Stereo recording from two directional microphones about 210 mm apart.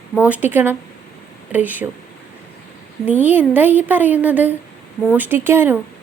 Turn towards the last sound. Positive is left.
turn(degrees=-10)  # may be behind; listen again after turning